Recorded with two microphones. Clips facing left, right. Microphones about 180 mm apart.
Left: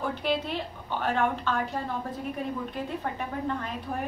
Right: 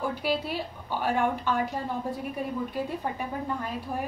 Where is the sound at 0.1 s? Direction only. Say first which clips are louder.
Even; 5° right (ahead or behind).